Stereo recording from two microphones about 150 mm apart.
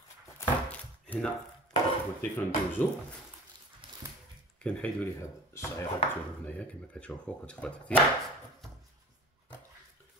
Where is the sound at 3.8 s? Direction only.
35° right (ahead or behind).